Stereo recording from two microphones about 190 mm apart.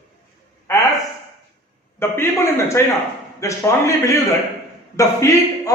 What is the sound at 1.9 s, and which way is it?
Speech, 15° left (ahead or behind).